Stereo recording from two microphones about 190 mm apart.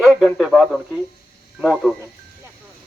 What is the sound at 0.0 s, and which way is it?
A man's voice, centre (ahead or behind).